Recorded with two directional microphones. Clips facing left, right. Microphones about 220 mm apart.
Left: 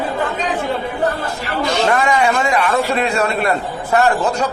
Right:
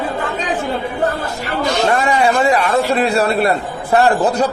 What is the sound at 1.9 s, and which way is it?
A man's voice, 35° right (ahead or behind).